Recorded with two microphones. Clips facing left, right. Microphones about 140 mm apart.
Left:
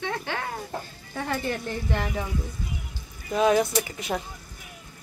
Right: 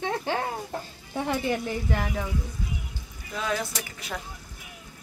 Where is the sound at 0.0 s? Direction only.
35° right (ahead or behind).